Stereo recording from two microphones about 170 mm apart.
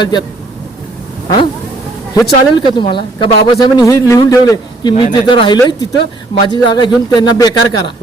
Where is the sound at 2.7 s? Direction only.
30° left (ahead or behind).